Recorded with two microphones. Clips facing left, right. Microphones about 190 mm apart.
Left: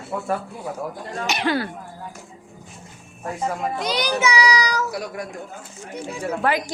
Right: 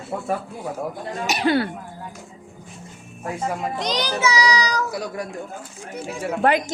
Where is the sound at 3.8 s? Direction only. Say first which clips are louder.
Left 1 dB; 10° left (ahead or behind).